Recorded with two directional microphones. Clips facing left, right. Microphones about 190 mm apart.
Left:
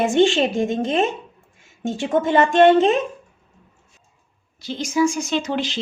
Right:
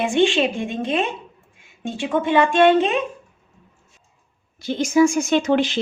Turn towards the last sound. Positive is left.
turn(degrees=-55)  # may be behind; listen again after turning